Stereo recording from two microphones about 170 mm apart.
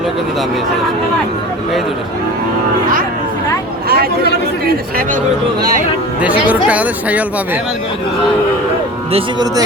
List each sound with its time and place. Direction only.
3.8 s chatter: 65° right (ahead or behind)
4.6 s speech: 55° right (ahead or behind)
6.2 s speech: 10° right (ahead or behind)
9.1 s speech: 25° right (ahead or behind)